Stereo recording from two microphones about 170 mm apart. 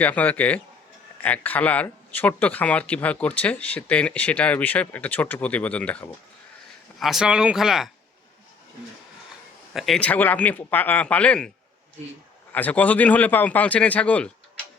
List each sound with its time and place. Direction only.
0.0 s speech: 10° left (ahead or behind)
9.7 s speech: centre (ahead or behind)
12.5 s speech: 10° left (ahead or behind)